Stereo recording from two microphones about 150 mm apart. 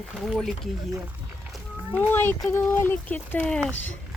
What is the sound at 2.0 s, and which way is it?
Speech, 15° left (ahead or behind).